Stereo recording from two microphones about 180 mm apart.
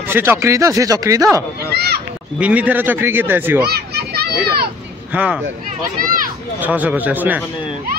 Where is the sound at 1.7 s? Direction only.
65° right (ahead or behind).